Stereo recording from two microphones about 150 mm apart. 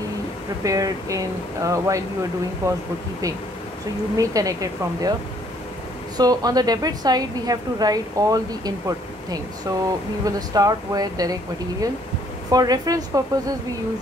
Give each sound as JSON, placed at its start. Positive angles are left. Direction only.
{"t": 0.7, "sound": "a woman's voice", "side_deg": -25}
{"t": 4.2, "sound": "a woman's voice", "side_deg": -25}
{"t": 6.1, "sound": "a woman's voice", "side_deg": -25}
{"t": 12.4, "sound": "a woman's voice", "side_deg": -25}